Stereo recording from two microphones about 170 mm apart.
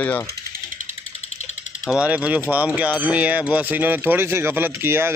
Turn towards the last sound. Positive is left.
turn(degrees=-15)  # may be behind; listen again after turning